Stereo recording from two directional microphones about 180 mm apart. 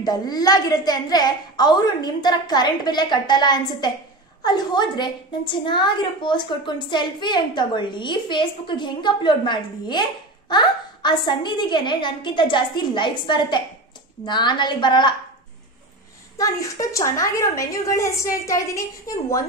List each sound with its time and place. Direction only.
0.0 s a woman's voice: 20° left (ahead or behind)
16.3 s a woman's voice: 15° left (ahead or behind)